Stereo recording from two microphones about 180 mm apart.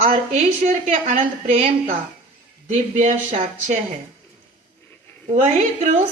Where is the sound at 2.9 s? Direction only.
40° right (ahead or behind).